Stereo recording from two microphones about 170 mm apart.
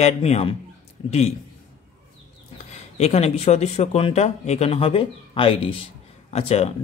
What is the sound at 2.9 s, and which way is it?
Speech, 40° left (ahead or behind).